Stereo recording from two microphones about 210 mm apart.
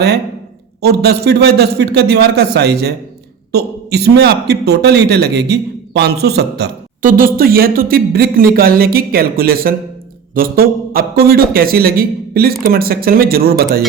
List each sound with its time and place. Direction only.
0.8 s a man's voice: 50° right (ahead or behind)